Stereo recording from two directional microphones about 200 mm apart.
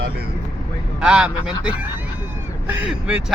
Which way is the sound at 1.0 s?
5° right (ahead or behind).